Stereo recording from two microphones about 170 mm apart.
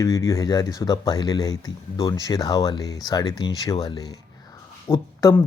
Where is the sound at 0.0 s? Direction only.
20° left (ahead or behind).